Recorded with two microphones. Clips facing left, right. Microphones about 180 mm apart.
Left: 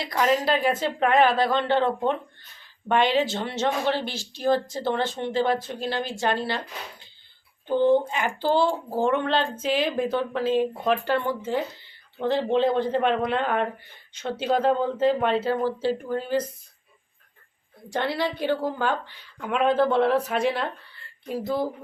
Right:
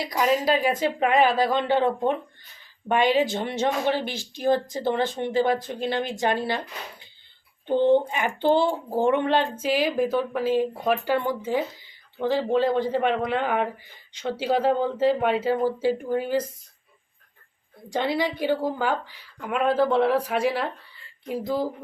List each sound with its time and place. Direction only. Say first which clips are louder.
0.0 s speech: even; 10° right (ahead or behind)
7.7 s speech: right 1 dB; 20° right (ahead or behind)
17.8 s speech: right 1 dB; 15° right (ahead or behind)